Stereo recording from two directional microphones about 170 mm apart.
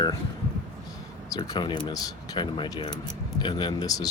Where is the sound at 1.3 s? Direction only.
25° left (ahead or behind).